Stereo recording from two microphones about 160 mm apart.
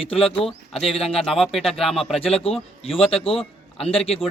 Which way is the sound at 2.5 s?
35° left (ahead or behind).